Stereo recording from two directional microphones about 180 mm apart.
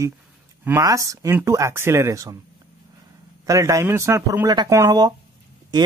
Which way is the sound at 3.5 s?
15° right (ahead or behind).